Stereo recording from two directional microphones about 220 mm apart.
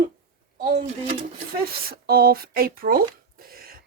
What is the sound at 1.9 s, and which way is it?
Speech, 45° right (ahead or behind).